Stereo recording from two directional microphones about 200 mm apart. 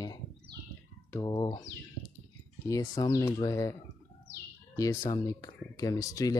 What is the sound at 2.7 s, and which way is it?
Speech, 20° left (ahead or behind).